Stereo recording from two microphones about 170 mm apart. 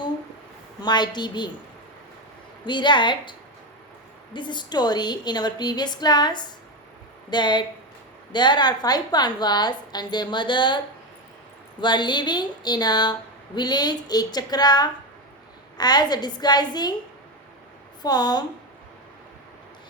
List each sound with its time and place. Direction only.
0.8 s a woman's voice: 25° left (ahead or behind)
2.6 s a woman's voice: 25° left (ahead or behind)
4.4 s a woman's voice: 25° left (ahead or behind)
11.8 s a woman's voice: 25° left (ahead or behind)
18.0 s a woman's voice: 25° left (ahead or behind)